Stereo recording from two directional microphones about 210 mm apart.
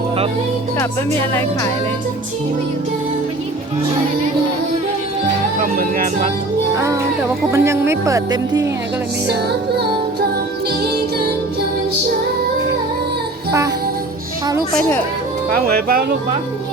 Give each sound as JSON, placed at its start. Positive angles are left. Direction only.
{"t": 0.8, "sound": "speech", "side_deg": 10}
{"t": 5.6, "sound": "music", "side_deg": -45}
{"t": 6.7, "sound": "speech", "side_deg": -15}
{"t": 9.2, "sound": "music", "side_deg": -50}
{"t": 14.7, "sound": "speech", "side_deg": 5}
{"t": 15.4, "sound": "music", "side_deg": -45}